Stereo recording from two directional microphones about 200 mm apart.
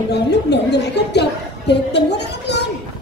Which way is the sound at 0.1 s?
55° left (ahead or behind).